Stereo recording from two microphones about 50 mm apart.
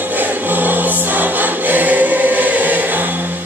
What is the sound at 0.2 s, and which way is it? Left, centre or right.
Choir, right.